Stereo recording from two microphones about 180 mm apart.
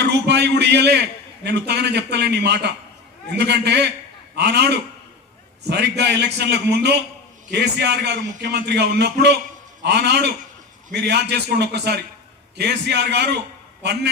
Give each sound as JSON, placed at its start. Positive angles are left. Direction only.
{"t": 0.0, "sound": "a man's voice", "side_deg": -70}